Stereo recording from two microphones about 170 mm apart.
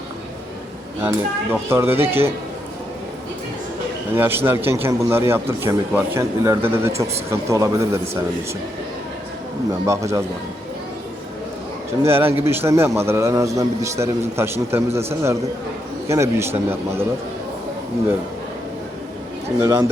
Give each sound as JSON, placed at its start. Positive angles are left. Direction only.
{"t": 1.0, "sound": "a man's voice", "side_deg": -15}
{"t": 4.1, "sound": "a man's voice", "side_deg": -15}
{"t": 9.8, "sound": "a man's voice", "side_deg": -15}
{"t": 12.0, "sound": "a man's voice", "side_deg": -15}
{"t": 19.5, "sound": "speech", "side_deg": -20}